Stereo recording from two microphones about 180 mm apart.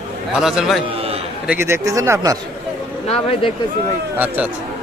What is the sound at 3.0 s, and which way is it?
Speech, 35° left (ahead or behind).